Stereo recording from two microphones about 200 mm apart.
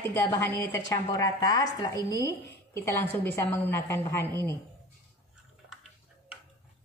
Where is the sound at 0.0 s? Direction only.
10° left (ahead or behind).